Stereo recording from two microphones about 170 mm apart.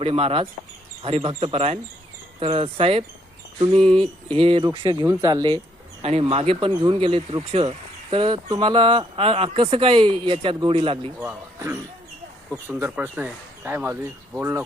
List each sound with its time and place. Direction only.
0.0 s speech: 35° right (ahead or behind)
3.8 s music: 5° left (ahead or behind)
4.4 s speech: 30° right (ahead or behind)
6.0 s speech: 35° right (ahead or behind)
11.2 s speech: 10° right (ahead or behind)